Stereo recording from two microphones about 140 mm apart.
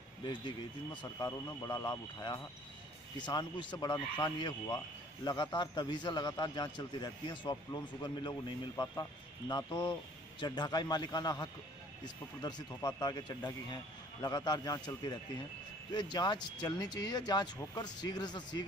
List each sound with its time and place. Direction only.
0.2 s speech: 30° left (ahead or behind)